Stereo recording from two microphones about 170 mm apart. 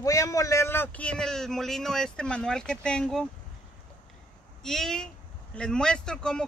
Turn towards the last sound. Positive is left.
turn(degrees=5)  # may be behind; listen again after turning